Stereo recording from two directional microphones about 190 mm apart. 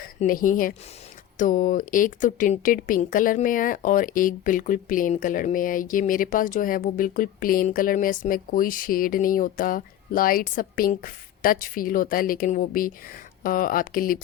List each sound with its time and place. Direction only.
0.0 s speech: 45° left (ahead or behind)